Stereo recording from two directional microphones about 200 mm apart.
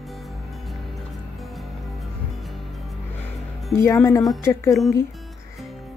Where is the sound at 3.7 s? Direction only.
15° left (ahead or behind).